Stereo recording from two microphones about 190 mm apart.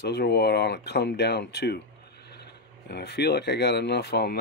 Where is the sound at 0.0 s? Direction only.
60° left (ahead or behind).